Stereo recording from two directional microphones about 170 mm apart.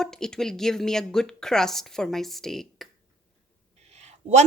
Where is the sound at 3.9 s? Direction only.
40° right (ahead or behind).